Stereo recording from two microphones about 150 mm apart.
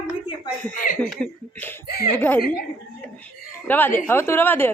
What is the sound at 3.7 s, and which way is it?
Speech, 15° left (ahead or behind).